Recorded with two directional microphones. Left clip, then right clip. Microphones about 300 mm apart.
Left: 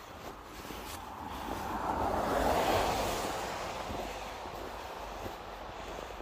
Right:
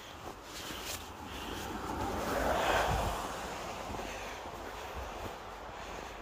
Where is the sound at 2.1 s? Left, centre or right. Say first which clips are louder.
Left 1 dB; left.